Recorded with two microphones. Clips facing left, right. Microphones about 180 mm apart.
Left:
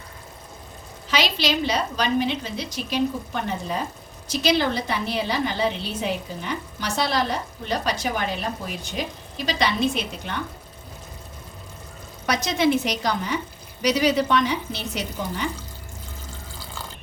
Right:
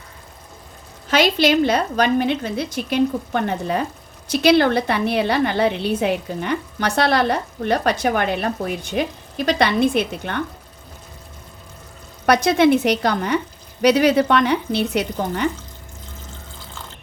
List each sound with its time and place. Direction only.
1.1 s a woman's voice: 50° right (ahead or behind)
12.2 s a woman's voice: 60° right (ahead or behind)